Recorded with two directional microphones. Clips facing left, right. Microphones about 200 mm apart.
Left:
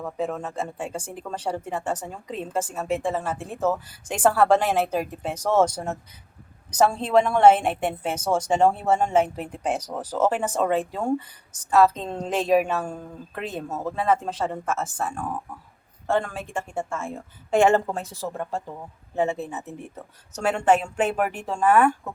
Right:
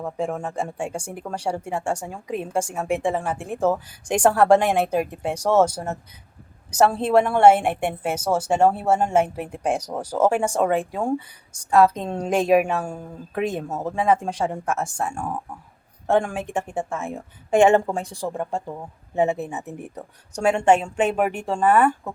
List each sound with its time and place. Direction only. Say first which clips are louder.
0.0 s speech: right 2 dB; 10° right (ahead or behind)
20.9 s speech: right 3 dB; 5° left (ahead or behind)
21.5 s speech: even; 5° right (ahead or behind)